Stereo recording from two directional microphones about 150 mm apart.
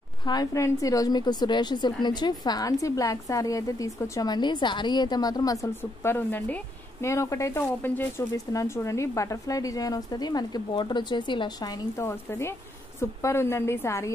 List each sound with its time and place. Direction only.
0.2 s a woman's voice: 25° left (ahead or behind)